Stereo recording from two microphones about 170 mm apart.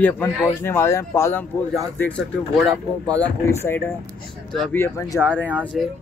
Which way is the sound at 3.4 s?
15° left (ahead or behind).